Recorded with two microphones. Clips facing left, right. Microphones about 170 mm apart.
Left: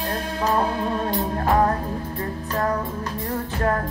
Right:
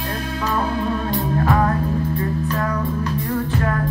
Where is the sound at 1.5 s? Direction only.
35° left (ahead or behind).